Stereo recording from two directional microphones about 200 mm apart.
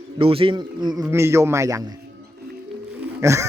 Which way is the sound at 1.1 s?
15° right (ahead or behind).